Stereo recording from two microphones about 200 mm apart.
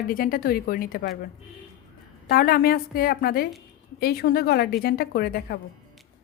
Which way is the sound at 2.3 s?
45° left (ahead or behind).